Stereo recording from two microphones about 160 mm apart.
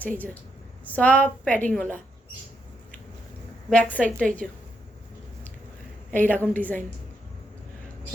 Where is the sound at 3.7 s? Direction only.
10° left (ahead or behind).